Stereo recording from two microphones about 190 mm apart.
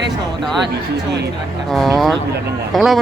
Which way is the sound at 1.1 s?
60° right (ahead or behind).